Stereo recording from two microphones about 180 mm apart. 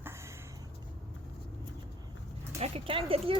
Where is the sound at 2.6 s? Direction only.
30° right (ahead or behind).